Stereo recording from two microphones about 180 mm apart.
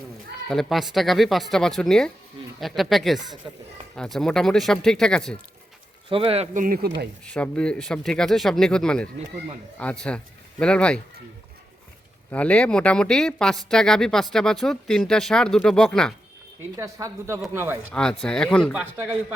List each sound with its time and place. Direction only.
0.4 s speech: centre (ahead or behind)
6.1 s speech: 30° right (ahead or behind); by 6.7 s 45° right (ahead or behind)
6.8 s speech: 65° right (ahead or behind)
7.3 s speech: 5° left (ahead or behind)
12.3 s speech: 5° left (ahead or behind)
16.7 s a woman's voice: 15° right (ahead or behind)
17.9 s speech: 5° left (ahead or behind)
18.7 s a woman's voice: 10° right (ahead or behind)